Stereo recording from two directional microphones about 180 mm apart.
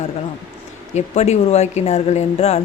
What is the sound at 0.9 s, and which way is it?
Speech, 40° left (ahead or behind).